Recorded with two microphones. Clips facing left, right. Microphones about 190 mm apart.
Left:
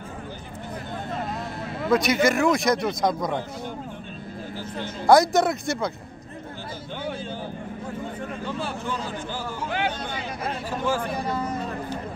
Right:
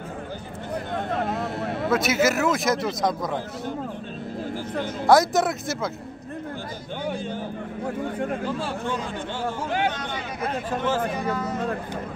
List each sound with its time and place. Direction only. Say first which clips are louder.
0.9 s vehicle: right 4 dB; 60° right (ahead or behind)
1.9 s speech: left 2 dB; 5° right (ahead or behind)
5.0 s speech: left 1 dB; centre (ahead or behind)
8.5 s speech: right 2 dB; centre (ahead or behind)